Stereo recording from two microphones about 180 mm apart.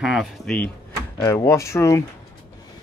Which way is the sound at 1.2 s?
15° left (ahead or behind).